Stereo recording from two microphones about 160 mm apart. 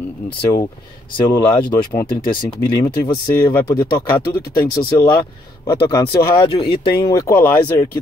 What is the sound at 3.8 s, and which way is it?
Speech, 30° left (ahead or behind).